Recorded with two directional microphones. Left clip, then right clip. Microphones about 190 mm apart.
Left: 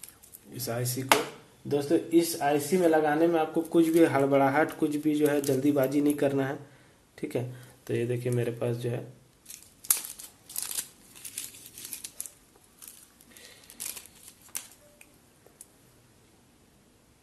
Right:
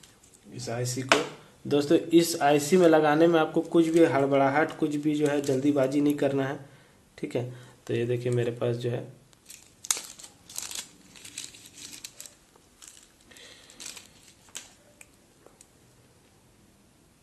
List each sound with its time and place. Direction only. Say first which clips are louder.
0.6 s speech: even; 20° left (ahead or behind)
1.7 s a man's voice: right 3 dB; 25° right (ahead or behind)
3.7 s speech: right 1 dB; centre (ahead or behind)
10.5 s crumpling: right 1 dB; 5° right (ahead or behind)